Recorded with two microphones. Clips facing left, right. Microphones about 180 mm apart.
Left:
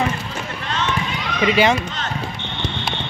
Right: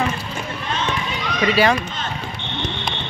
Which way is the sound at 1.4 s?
20° left (ahead or behind).